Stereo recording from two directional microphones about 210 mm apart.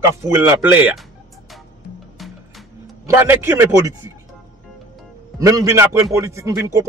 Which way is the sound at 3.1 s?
10° right (ahead or behind).